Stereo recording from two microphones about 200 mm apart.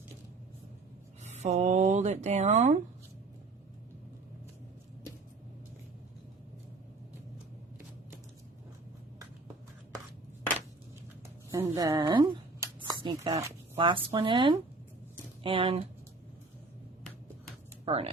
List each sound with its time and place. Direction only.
1.4 s speech: 35° right (ahead or behind)
11.5 s speech: 15° right (ahead or behind)
17.8 s speech: 30° right (ahead or behind)